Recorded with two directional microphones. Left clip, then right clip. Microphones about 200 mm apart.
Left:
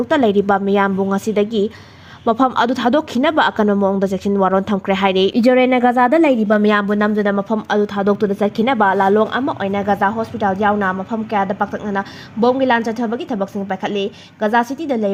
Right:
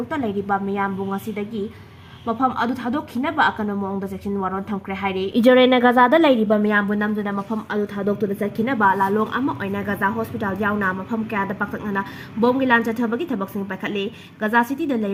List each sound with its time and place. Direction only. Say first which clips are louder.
0.1 s a woman's voice: left 9 dB; 45° left (ahead or behind)
5.4 s speech: right 2 dB; 10° left (ahead or behind)
6.5 s speech: left 4 dB; 35° left (ahead or behind)